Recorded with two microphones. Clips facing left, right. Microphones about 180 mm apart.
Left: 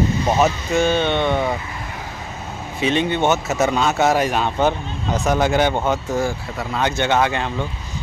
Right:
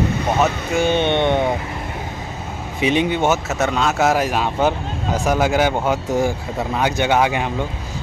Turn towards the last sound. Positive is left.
turn(degrees=-10)  # may be behind; listen again after turning